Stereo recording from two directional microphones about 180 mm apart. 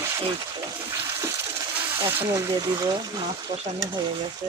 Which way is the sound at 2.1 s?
15° right (ahead or behind).